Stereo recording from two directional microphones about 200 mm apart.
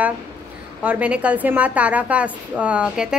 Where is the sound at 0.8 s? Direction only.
5° right (ahead or behind).